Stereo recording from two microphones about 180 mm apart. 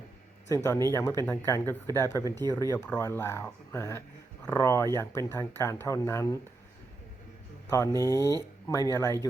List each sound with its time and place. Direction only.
0.5 s speech: 15° left (ahead or behind)
7.7 s speech: 15° left (ahead or behind)